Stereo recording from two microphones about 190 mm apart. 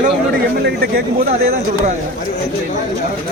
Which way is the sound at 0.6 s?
55° right (ahead or behind).